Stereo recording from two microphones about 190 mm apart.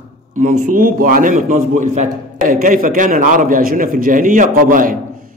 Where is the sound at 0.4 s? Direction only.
45° right (ahead or behind).